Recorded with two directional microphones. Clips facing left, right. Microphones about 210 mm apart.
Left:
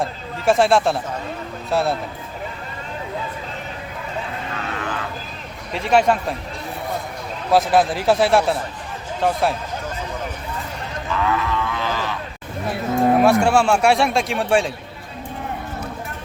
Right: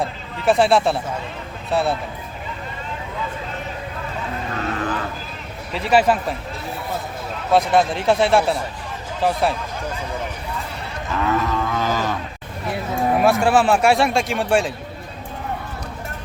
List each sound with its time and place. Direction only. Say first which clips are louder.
0.4 s speech: even; centre (ahead or behind)
4.5 s vehicle: right 4 dB; 35° right (ahead or behind)
5.7 s speech: even; centre (ahead or behind)
7.5 s speech: even; centre (ahead or behind)
11.1 s livestock: right 1 dB; 40° right (ahead or behind)
13.2 s speech: left 1 dB; centre (ahead or behind)